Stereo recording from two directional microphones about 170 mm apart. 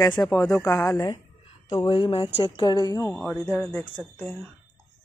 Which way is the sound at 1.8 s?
30° left (ahead or behind).